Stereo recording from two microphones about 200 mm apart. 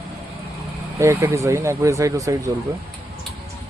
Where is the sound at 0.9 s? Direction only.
15° right (ahead or behind).